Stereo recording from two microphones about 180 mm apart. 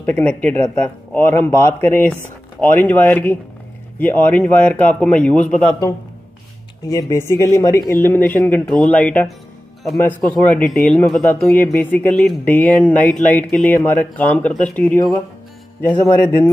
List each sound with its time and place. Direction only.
0.0 s speech: 10° left (ahead or behind)
6.9 s speech: 20° left (ahead or behind)